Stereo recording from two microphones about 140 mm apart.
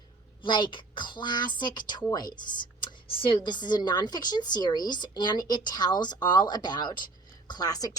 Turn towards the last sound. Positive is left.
turn(degrees=25)  # may be behind; listen again after turning